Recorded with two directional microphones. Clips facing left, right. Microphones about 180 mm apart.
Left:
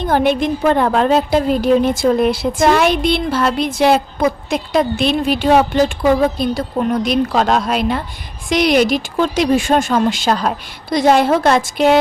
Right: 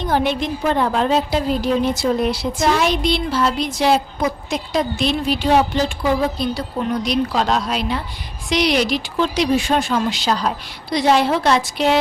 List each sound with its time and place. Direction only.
0.0 s a woman's voice: 55° left (ahead or behind)